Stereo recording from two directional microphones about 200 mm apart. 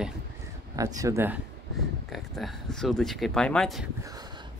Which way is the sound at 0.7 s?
15° right (ahead or behind).